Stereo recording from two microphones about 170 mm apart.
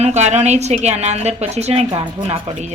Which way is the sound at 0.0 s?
40° right (ahead or behind).